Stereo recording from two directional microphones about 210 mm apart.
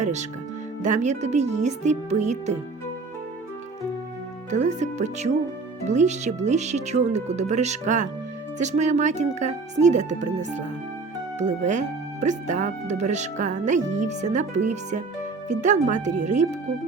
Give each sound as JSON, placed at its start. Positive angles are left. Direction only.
{"t": 0.0, "sound": "speech", "side_deg": -35}
{"t": 4.5, "sound": "speech", "side_deg": -35}